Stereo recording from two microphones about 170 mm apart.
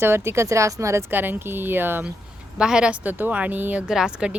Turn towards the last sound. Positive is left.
turn(degrees=-5)  # may be behind; listen again after turning